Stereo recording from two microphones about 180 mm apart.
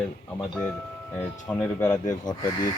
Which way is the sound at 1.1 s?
10° left (ahead or behind).